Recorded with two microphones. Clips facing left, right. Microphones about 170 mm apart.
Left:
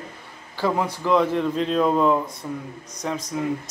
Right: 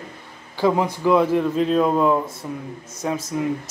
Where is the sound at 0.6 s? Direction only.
15° right (ahead or behind).